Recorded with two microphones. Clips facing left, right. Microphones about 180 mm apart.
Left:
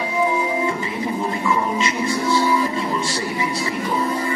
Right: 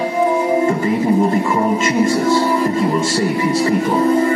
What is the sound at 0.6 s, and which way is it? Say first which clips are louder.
Music: right 8 dB; 45° right (ahead or behind).